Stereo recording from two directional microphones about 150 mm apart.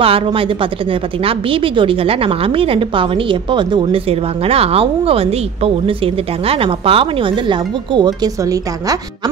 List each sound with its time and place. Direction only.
0.0 s a woman's voice: 40° right (ahead or behind)